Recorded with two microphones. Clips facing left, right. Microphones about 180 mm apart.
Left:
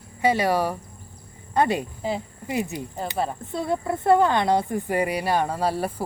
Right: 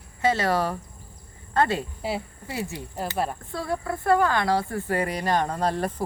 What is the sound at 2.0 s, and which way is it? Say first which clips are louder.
Speech: left 2 dB; 10° right (ahead or behind).